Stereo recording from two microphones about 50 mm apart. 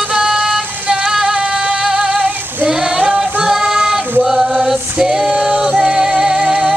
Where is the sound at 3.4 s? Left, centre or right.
Centre.